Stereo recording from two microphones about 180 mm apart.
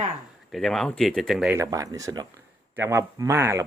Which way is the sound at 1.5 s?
15° right (ahead or behind).